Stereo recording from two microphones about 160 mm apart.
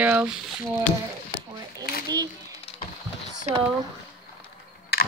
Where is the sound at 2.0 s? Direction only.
25° right (ahead or behind).